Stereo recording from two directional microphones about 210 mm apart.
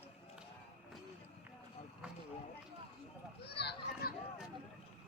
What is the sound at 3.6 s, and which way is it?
Children playing, 50° left (ahead or behind).